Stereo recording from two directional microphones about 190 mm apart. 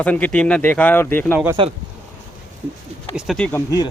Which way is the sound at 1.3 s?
10° right (ahead or behind).